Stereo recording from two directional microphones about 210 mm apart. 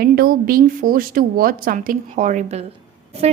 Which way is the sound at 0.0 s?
45° right (ahead or behind).